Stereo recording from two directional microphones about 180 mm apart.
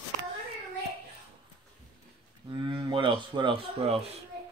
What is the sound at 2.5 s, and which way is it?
Speech, 25° right (ahead or behind).